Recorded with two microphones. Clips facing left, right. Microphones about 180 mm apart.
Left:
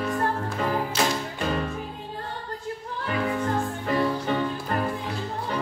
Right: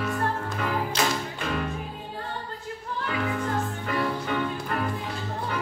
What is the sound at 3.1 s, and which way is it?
Music, 30° left (ahead or behind).